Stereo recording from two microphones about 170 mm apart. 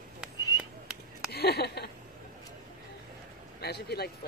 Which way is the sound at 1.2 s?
70° left (ahead or behind).